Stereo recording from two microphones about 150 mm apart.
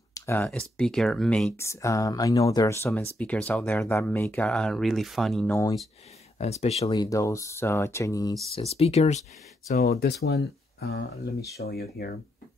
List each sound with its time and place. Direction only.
0.1 s a sound: 15° left (ahead or behind)
0.5 s speech: 5° left (ahead or behind)
1.6 s speech: 20° left (ahead or behind); by 5.6 s centre (ahead or behind)
6.3 s speech: 45° left (ahead or behind)
6.9 s speech: 25° left (ahead or behind)
8.5 s speech: 45° left (ahead or behind)
9.8 s speech: 90° left